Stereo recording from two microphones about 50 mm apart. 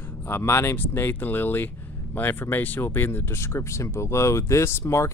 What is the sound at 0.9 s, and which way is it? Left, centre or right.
Speech, left.